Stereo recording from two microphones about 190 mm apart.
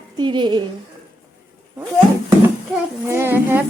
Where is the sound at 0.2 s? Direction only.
25° right (ahead or behind).